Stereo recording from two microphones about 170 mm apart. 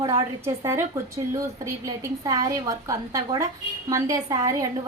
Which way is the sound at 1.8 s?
20° right (ahead or behind).